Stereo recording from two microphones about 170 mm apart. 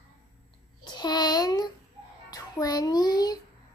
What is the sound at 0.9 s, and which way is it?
A child's voice, 25° left (ahead or behind).